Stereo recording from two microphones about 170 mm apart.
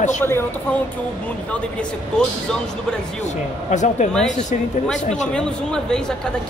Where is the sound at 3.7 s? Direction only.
45° left (ahead or behind).